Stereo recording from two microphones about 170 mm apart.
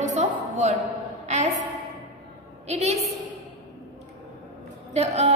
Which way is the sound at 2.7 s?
40° right (ahead or behind).